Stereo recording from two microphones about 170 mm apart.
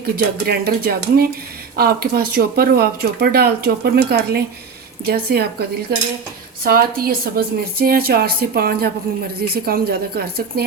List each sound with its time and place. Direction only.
0.0 s a woman's voice: 65° right (ahead or behind)
5.9 s cutlery: 65° right (ahead or behind)
6.7 s a woman's voice: 60° right (ahead or behind)